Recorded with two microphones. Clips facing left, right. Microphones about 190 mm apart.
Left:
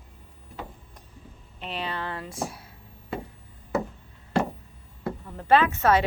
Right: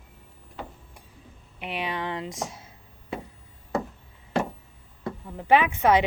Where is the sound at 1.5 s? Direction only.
15° right (ahead or behind).